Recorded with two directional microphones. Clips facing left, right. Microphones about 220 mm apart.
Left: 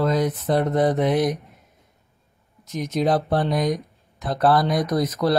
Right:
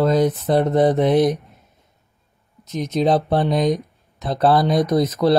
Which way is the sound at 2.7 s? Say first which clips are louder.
Right 3 dB; 25° right (ahead or behind).